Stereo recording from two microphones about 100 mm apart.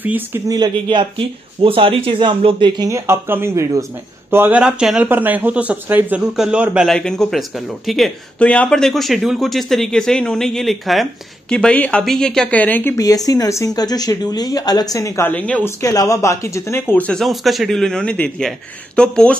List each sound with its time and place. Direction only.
0.0 s speech: 15° right (ahead or behind)
0.8 s speech: 60° right (ahead or behind)
2.9 s speech: 25° right (ahead or behind); by 5.0 s 10° right (ahead or behind)
5.0 s speech: 20° right (ahead or behind)
6.9 s a man's voice: 5° left (ahead or behind)
8.4 s a man's voice: 15° left (ahead or behind)
11.5 s speech: 10° left (ahead or behind)
12.9 s speech: 35° left (ahead or behind)
15.2 s speech: 15° left (ahead or behind)
15.6 s speech: 35° left (ahead or behind); by 17.2 s 15° left (ahead or behind)
17.2 s a man's voice: centre (ahead or behind)